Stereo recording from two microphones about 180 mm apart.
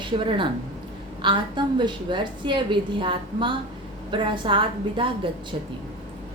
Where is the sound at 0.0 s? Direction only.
25° right (ahead or behind).